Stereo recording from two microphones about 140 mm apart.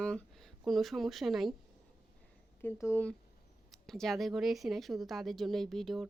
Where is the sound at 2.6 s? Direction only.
15° left (ahead or behind).